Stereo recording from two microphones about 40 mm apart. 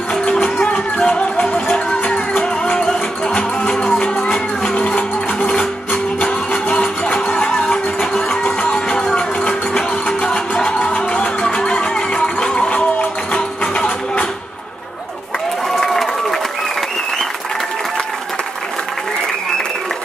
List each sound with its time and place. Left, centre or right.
0.4 s music: left
1.0 s music: left
2.3 s music: left
4.0 s music: left
7.7 s music: centre
8.3 s music: left
10.2 s music: left
12.7 s music: left
15.8 s run: centre